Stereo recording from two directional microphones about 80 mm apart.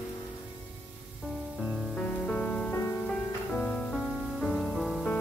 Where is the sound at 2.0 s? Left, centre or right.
Centre.